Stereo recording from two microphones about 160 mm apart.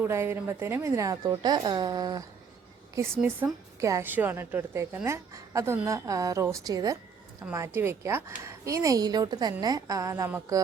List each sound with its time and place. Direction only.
0.0 s speech: 15° right (ahead or behind)
3.2 s a woman's voice: 15° right (ahead or behind)